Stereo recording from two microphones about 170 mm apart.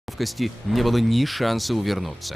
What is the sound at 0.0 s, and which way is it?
Speech, centre (ahead or behind).